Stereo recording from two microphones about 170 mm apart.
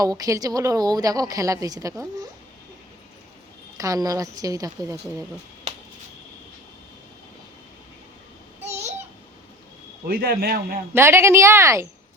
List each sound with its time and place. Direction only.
0.0 s a woman's voice: 20° right (ahead or behind)
3.8 s a woman's voice: 20° right (ahead or behind)
10.1 s a man's voice: 65° right (ahead or behind)
10.9 s a woman's voice: 15° right (ahead or behind)